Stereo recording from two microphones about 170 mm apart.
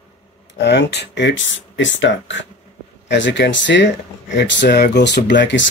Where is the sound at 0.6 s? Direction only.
90° left.